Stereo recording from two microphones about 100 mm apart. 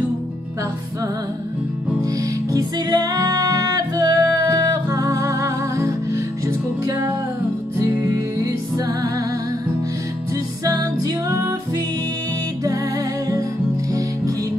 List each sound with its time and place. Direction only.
2.1 s music: 40° right (ahead or behind)
8.7 s music: 35° right (ahead or behind)
10.6 s music: 40° right (ahead or behind)